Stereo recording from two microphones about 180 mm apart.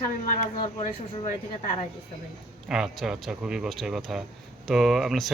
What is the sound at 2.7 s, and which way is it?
Speech, 5° right (ahead or behind).